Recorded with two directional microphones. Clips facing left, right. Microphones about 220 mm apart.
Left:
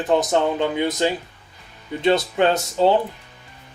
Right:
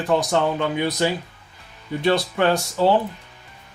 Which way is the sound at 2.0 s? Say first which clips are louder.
Left 2 dB; 20° left (ahead or behind).